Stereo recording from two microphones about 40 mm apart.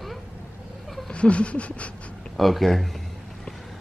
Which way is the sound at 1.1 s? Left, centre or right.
Left.